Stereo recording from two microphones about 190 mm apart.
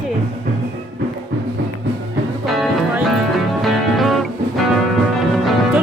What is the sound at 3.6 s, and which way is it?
Music, centre (ahead or behind).